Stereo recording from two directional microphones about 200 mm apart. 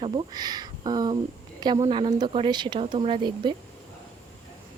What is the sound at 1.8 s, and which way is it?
Speech, 25° right (ahead or behind).